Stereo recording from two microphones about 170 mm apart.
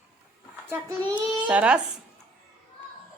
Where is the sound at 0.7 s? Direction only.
15° right (ahead or behind).